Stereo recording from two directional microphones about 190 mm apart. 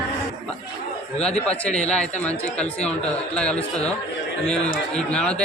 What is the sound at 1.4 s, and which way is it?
A man's voice, 5° left (ahead or behind).